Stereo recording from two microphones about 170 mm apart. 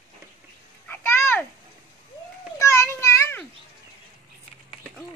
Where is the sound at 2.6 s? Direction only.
15° left (ahead or behind).